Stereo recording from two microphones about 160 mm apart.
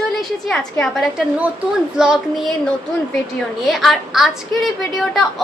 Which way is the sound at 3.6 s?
Centre (ahead or behind).